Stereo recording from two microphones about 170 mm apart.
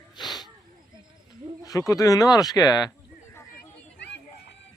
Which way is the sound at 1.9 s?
20° left (ahead or behind).